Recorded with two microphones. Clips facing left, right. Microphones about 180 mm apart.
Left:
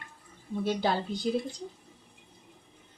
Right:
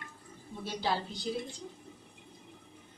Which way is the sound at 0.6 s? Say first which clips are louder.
Left 5 dB; 55° left (ahead or behind).